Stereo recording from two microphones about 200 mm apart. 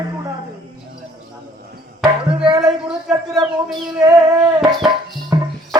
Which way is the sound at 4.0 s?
20° right (ahead or behind).